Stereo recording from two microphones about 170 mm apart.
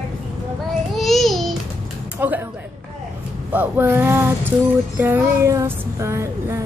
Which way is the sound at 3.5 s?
10° right (ahead or behind).